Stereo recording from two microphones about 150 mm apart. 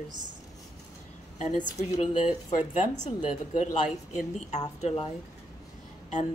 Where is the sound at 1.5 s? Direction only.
55° left (ahead or behind).